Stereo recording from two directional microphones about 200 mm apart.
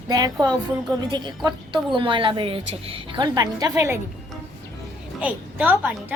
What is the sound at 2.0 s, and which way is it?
A woman's voice, 25° right (ahead or behind).